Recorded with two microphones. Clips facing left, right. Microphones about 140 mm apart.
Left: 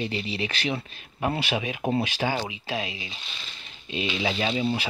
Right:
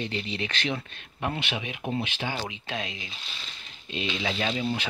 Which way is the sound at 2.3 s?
10° left (ahead or behind).